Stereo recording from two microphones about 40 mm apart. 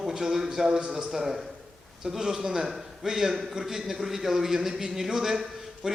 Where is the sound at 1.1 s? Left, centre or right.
Centre.